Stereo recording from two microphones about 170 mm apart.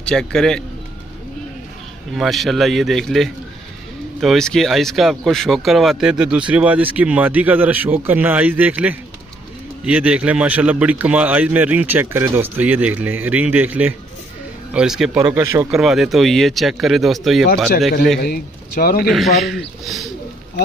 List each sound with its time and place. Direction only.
0.0 s speech: 5° left (ahead or behind)
2.1 s speech: centre (ahead or behind)
15.1 s speech: 15° right (ahead or behind)
15.7 s speech: 5° right (ahead or behind)
18.2 s speech: 65° left (ahead or behind)
19.0 s speech: centre (ahead or behind)